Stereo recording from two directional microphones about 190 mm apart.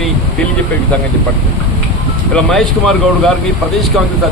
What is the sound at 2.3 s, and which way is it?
Speech, centre (ahead or behind).